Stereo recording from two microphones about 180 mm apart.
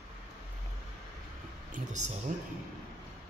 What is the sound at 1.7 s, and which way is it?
Speech, 40° right (ahead or behind).